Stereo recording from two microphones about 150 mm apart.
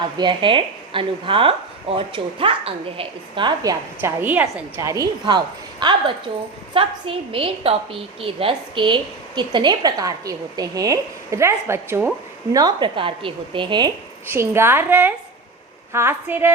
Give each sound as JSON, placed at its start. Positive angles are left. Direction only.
{"t": 0.2, "sound": "speech", "side_deg": -35}
{"t": 4.2, "sound": "a woman's voice", "side_deg": -10}
{"t": 5.8, "sound": "a woman's voice", "side_deg": -30}
{"t": 12.5, "sound": "speech", "side_deg": -30}
{"t": 14.3, "sound": "a woman's voice", "side_deg": -15}